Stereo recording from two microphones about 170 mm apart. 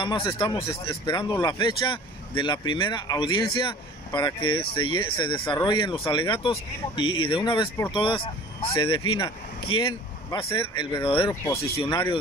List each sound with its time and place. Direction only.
0.0 s speech: 30° left (ahead or behind)